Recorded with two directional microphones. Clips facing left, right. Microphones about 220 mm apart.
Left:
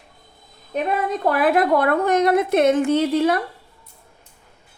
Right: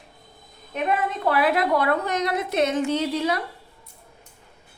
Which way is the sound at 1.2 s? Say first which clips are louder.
Left 4 dB; 45° left (ahead or behind).